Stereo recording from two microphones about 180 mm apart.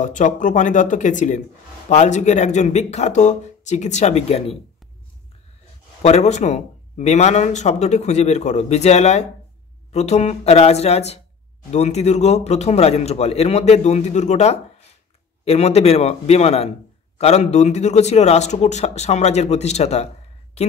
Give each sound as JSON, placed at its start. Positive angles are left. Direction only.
{"t": 0.0, "sound": "speech", "side_deg": 45}
{"t": 6.0, "sound": "speech", "side_deg": 40}